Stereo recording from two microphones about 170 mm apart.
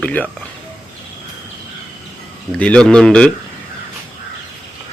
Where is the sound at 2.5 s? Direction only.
5° left (ahead or behind).